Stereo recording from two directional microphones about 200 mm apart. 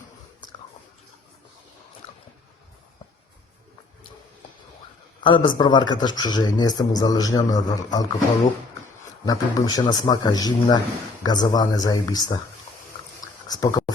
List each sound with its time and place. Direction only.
5.2 s speech: 25° left (ahead or behind)
9.2 s speech: 20° left (ahead or behind)
13.2 s a sound: 20° left (ahead or behind)